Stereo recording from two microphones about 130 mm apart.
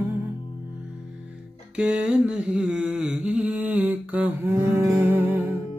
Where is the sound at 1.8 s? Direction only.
10° right (ahead or behind).